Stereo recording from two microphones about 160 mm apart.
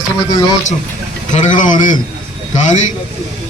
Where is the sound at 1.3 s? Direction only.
50° left (ahead or behind).